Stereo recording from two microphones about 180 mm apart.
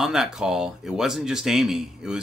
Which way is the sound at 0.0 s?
Centre (ahead or behind).